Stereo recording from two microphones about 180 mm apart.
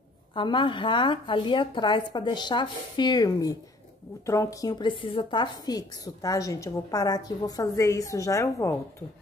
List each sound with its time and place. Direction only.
0.3 s a woman's voice: 25° left (ahead or behind)